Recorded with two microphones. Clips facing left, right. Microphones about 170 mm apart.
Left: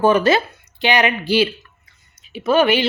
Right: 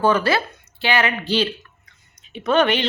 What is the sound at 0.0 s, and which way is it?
A woman's voice, 20° left (ahead or behind).